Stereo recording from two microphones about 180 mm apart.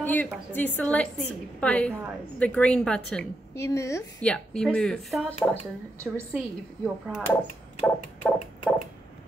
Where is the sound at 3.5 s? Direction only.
15° left (ahead or behind).